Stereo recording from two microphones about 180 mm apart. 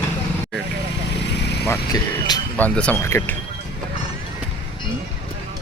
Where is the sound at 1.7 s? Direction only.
20° left (ahead or behind).